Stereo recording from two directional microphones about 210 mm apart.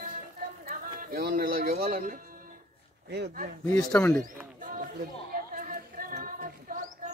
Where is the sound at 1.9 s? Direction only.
40° right (ahead or behind).